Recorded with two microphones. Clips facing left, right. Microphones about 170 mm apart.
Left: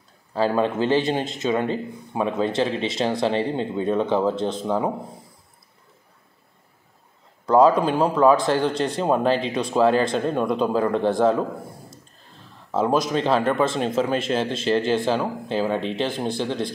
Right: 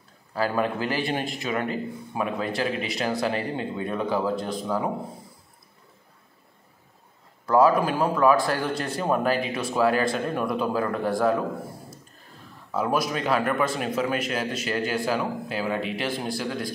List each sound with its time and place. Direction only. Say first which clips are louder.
0.3 s speech: left 4 dB; 25° left (ahead or behind)
7.4 s speech: left 3 dB; 20° left (ahead or behind)
12.7 s speech: left 4 dB; 25° left (ahead or behind)